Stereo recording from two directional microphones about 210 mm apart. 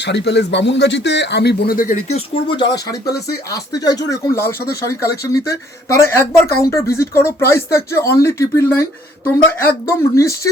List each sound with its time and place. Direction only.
0.0 s speech: 55° left (ahead or behind); by 4.7 s 10° left (ahead or behind)
5.9 s speech: 15° left (ahead or behind)